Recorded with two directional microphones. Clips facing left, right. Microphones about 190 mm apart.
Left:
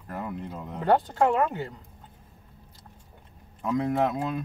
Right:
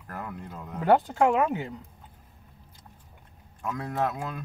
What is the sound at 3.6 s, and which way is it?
Speech, 20° left (ahead or behind).